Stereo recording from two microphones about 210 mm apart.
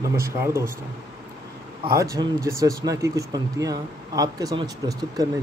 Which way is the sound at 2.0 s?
15° right (ahead or behind).